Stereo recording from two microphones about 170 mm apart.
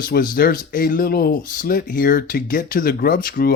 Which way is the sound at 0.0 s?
60° left (ahead or behind).